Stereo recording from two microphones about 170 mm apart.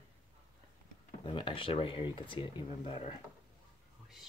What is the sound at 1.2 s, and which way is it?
Speech, 30° left (ahead or behind).